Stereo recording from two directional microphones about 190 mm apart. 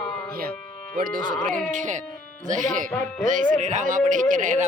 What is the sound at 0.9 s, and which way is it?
Speech, 45° right (ahead or behind).